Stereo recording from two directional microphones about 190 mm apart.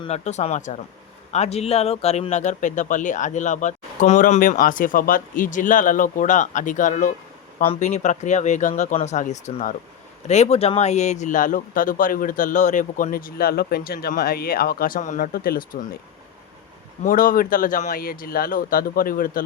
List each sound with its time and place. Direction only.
0.0 s speech: 35° left (ahead or behind)
17.0 s speech: 45° left (ahead or behind)